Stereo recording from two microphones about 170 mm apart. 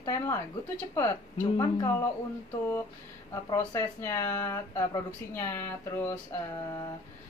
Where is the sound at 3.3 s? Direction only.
20° left (ahead or behind).